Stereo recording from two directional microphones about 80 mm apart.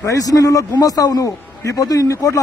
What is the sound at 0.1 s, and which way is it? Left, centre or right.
A man's voice, left.